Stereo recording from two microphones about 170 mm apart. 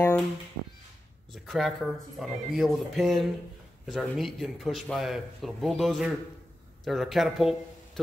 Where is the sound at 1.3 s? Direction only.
Centre (ahead or behind).